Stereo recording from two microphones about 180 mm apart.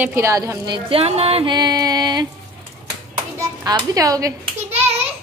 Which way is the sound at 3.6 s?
20° right (ahead or behind).